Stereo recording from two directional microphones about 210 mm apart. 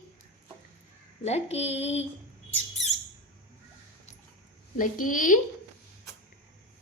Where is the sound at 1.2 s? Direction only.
30° left (ahead or behind).